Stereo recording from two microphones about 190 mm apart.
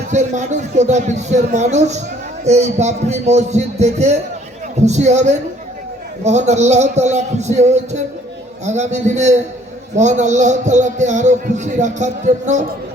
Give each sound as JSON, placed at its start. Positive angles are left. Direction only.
{"t": 0.1, "sound": "speech", "side_deg": -40}